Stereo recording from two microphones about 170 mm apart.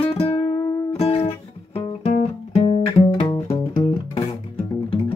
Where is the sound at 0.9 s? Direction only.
35° left (ahead or behind).